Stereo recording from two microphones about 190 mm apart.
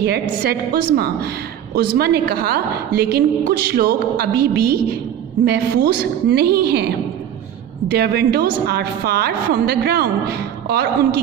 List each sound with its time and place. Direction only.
0.0 s a woman's voice: 55° right (ahead or behind)
7.9 s a woman's voice: 60° right (ahead or behind)